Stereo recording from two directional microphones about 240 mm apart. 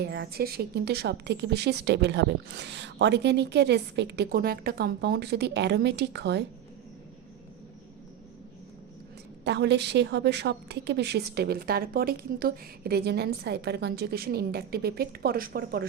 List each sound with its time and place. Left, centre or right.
0.0 s a woman's voice: right
9.4 s a woman's voice: right